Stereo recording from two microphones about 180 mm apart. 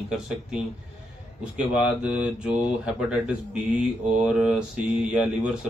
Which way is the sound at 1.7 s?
5° right (ahead or behind).